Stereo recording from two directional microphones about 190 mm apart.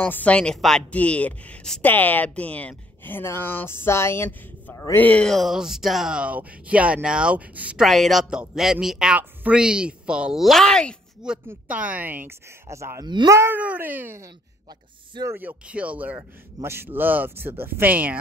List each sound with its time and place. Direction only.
0.0 s speech: 10° left (ahead or behind)
11.4 s speech: 10° right (ahead or behind)